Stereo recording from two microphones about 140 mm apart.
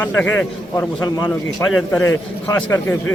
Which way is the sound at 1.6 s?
5° left (ahead or behind).